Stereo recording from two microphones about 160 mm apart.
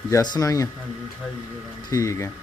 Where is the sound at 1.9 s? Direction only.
20° left (ahead or behind).